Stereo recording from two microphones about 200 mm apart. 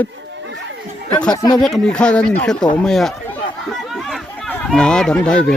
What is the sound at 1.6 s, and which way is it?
Speech, 5° left (ahead or behind).